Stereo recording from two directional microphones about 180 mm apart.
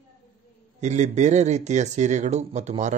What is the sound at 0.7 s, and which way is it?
Speech, 40° right (ahead or behind).